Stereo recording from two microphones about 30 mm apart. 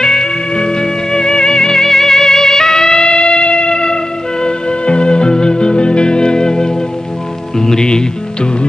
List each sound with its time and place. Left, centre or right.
0.0 s music: left